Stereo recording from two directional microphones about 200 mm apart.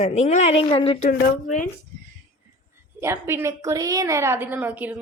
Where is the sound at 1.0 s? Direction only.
50° left (ahead or behind).